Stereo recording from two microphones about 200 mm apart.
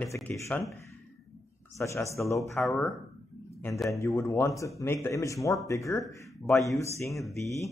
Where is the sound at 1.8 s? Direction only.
15° left (ahead or behind).